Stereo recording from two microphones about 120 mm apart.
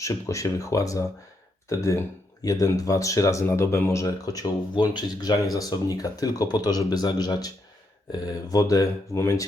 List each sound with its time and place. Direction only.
0.0 s speech: 25° left (ahead or behind)